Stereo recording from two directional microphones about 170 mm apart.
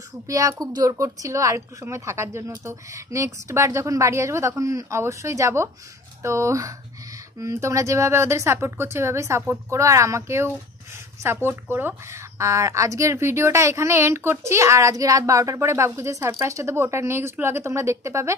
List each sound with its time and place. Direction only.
0.3 s a woman's voice: 20° right (ahead or behind)